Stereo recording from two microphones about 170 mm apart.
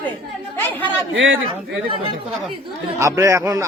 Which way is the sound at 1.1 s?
90° right.